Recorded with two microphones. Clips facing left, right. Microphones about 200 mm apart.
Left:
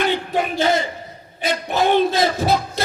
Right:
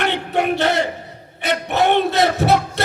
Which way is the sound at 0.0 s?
70° right (ahead or behind).